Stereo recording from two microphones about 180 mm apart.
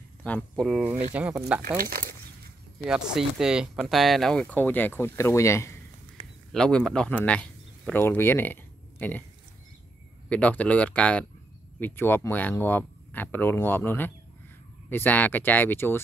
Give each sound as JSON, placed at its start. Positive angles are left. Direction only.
{"t": 0.2, "sound": "speech", "side_deg": 5}
{"t": 1.8, "sound": "speech", "side_deg": -50}
{"t": 2.9, "sound": "speech", "side_deg": -5}
{"t": 6.5, "sound": "speech", "side_deg": 5}
{"t": 10.3, "sound": "speech", "side_deg": 5}